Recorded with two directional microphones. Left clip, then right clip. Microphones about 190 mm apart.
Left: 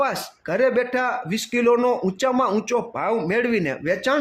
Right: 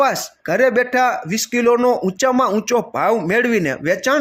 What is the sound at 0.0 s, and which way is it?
Speech, 15° right (ahead or behind).